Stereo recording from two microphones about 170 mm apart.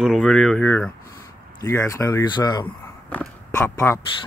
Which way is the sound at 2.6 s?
10° left (ahead or behind).